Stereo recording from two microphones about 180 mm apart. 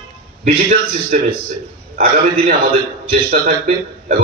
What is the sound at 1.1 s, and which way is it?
Speech, 45° right (ahead or behind).